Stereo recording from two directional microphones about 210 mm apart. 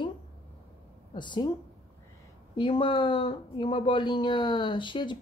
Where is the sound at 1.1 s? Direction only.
20° left (ahead or behind).